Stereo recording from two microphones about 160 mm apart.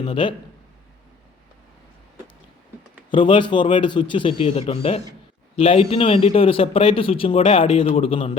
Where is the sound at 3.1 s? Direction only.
30° left (ahead or behind).